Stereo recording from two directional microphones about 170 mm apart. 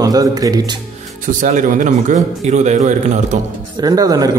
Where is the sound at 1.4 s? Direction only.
50° right (ahead or behind).